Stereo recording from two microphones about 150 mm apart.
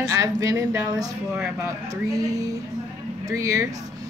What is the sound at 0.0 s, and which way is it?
Speech, 20° right (ahead or behind).